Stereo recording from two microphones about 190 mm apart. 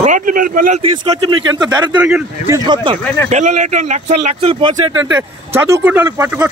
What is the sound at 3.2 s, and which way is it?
Speech, 40° right (ahead or behind).